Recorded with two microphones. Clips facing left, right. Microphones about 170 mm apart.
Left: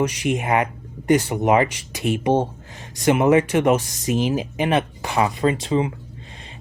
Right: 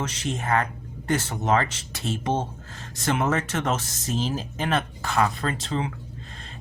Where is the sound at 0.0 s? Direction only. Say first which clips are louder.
Left 8 dB; 15° left (ahead or behind).